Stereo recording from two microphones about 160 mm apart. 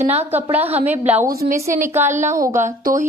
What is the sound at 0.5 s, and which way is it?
Speech, 10° right (ahead or behind).